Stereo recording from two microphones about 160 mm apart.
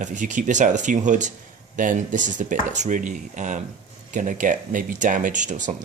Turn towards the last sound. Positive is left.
turn(degrees=-50)  # may be behind; listen again after turning